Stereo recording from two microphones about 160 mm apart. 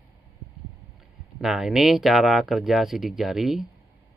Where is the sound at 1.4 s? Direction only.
5° right (ahead or behind).